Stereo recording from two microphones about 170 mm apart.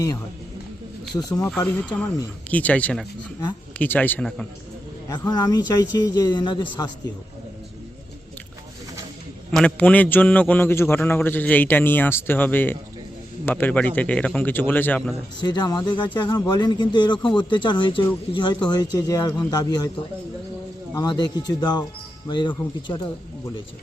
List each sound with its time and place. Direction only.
1.1 s speech: 25° left (ahead or behind)
1.6 s a man's voice: 10° left (ahead or behind)
5.0 s speech: 20° left (ahead or behind)
9.5 s a man's voice: 5° left (ahead or behind)
15.4 s speech: 25° left (ahead or behind)
20.9 s speech: 25° left (ahead or behind)